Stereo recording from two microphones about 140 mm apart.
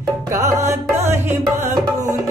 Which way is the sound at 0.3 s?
20° right (ahead or behind).